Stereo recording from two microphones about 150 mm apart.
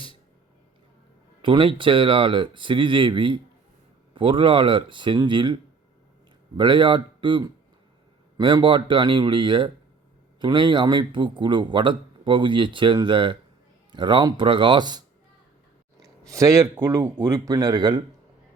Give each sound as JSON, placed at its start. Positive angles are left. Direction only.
{"t": 1.4, "sound": "a man's voice", "side_deg": -35}
{"t": 6.6, "sound": "a man's voice", "side_deg": -30}